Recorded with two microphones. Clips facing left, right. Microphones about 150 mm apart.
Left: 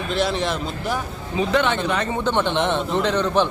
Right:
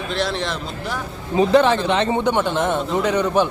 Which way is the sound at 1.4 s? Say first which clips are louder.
Right 5 dB; 35° right (ahead or behind).